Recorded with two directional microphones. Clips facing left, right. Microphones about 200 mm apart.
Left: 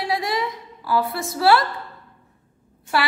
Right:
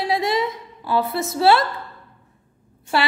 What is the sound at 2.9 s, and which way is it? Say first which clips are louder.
Speech: right 1 dB; 25° right (ahead or behind).